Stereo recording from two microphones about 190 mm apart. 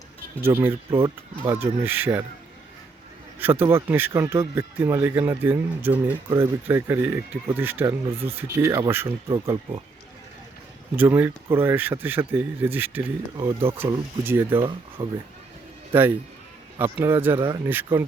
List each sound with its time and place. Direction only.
0.4 s speech: 10° right (ahead or behind)
3.4 s speech: 10° right (ahead or behind)
10.9 s speech: 10° right (ahead or behind)
13.3 s speech: 25° right (ahead or behind)
13.7 s a man's voice: 10° right (ahead or behind)